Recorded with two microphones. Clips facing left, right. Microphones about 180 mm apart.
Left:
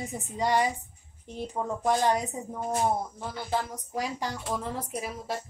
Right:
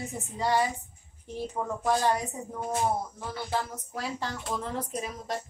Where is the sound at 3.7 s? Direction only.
15° left (ahead or behind).